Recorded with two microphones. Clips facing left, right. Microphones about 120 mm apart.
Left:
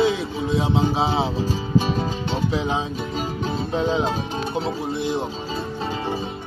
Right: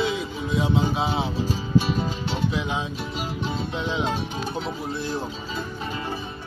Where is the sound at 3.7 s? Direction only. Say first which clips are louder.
Left 7 dB; 40° left (ahead or behind).